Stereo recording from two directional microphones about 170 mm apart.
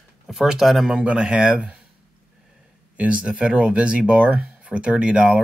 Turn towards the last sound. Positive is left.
turn(degrees=-5)  # may be behind; listen again after turning